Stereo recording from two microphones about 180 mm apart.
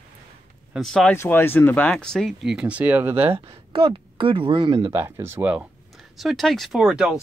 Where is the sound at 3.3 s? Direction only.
30° right (ahead or behind); by 7.1 s 5° right (ahead or behind).